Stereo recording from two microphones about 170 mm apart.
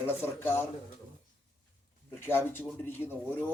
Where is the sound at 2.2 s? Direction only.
10° left (ahead or behind).